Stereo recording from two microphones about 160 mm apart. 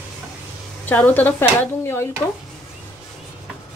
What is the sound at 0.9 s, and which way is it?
Speech, 10° left (ahead or behind).